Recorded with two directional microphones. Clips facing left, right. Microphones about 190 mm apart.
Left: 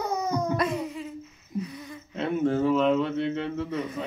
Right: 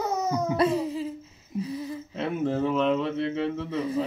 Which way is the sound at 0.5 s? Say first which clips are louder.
Right 4 dB; 30° right (ahead or behind).